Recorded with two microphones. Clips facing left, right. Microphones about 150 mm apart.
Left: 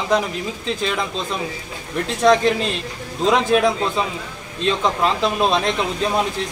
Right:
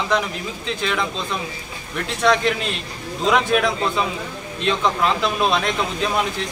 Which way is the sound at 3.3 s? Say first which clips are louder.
Left 2 dB; 30° left (ahead or behind).